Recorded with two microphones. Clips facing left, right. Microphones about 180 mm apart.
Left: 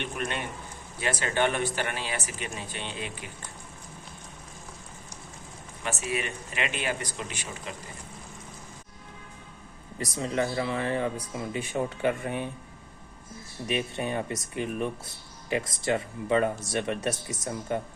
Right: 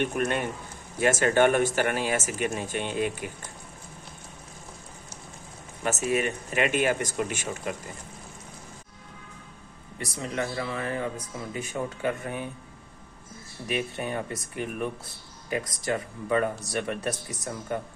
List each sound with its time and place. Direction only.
0.0 s speech: 45° right (ahead or behind)
5.8 s speech: 45° right (ahead or behind)
10.2 s speech: 30° left (ahead or behind)
13.7 s speech: 20° left (ahead or behind)